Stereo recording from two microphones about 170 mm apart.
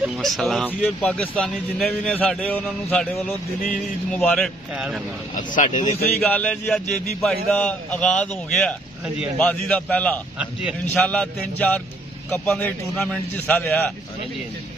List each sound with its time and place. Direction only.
0.0 s a man's voice: centre (ahead or behind)
4.1 s a man's voice: centre (ahead or behind)
5.3 s speech: 50° left (ahead or behind)
5.9 s a man's voice: 10° left (ahead or behind)
10.4 s a man's voice: 5° right (ahead or behind)
11.0 s a man's voice: 5° left (ahead or behind)